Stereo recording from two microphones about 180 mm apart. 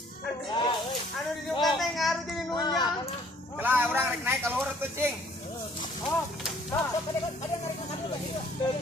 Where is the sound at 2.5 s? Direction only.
25° left (ahead or behind).